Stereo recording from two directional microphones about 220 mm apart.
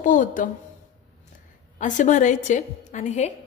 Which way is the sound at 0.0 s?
35° left (ahead or behind).